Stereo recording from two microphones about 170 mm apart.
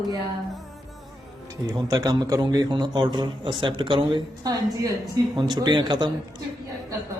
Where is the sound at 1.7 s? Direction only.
20° right (ahead or behind).